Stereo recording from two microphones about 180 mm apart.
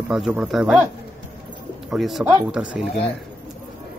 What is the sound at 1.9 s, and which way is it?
Speech, centre (ahead or behind).